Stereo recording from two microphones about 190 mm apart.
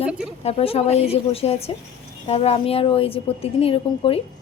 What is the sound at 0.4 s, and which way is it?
A woman's voice, 30° left (ahead or behind).